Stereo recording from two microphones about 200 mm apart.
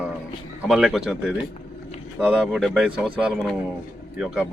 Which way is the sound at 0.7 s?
Centre (ahead or behind).